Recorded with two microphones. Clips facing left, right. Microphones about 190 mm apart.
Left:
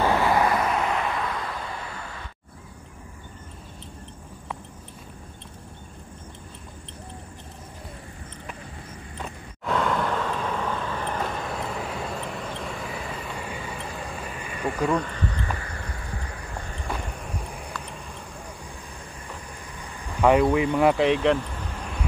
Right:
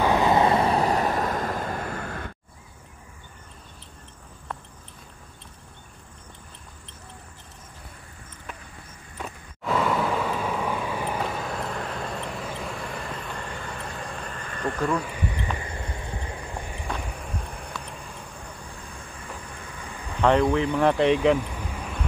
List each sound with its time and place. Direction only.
0.0 s vehicle: 15° right (ahead or behind); by 2.3 s 55° right (ahead or behind)
9.2 s vehicle: 5° right (ahead or behind)
16.8 s vehicle: centre (ahead or behind)
20.2 s speech: 10° left (ahead or behind)